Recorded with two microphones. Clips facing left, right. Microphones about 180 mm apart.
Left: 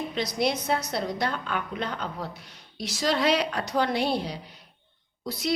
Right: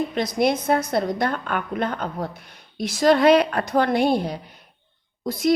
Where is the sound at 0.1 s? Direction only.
55° right (ahead or behind).